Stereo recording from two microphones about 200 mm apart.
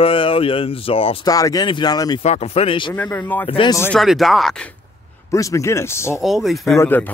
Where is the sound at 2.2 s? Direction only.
35° left (ahead or behind).